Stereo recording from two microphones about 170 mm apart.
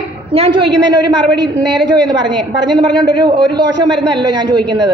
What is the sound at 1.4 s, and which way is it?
A woman's voice, 25° right (ahead or behind).